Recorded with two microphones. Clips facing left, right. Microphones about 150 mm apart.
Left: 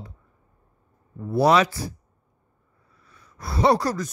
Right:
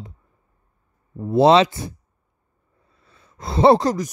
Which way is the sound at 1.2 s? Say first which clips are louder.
Right 5 dB; 25° right (ahead or behind).